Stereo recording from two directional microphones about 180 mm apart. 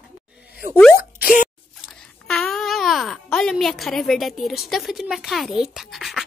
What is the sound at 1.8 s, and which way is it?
A child's voice, 5° left (ahead or behind).